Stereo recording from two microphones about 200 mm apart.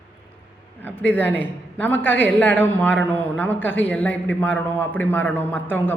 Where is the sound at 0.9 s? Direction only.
10° left (ahead or behind).